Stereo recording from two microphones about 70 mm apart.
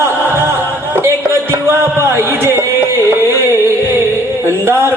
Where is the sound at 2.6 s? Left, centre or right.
Left.